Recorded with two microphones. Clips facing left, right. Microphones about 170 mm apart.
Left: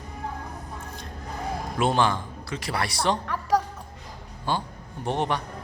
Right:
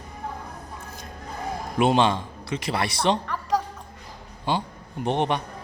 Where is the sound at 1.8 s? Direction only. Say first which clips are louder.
Right 3 dB; 20° right (ahead or behind).